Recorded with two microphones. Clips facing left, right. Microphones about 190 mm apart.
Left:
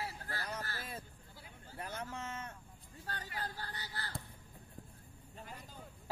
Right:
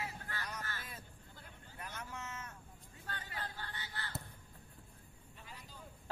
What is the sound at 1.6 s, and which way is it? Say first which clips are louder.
Vehicle: left 5 dB; 35° left (ahead or behind).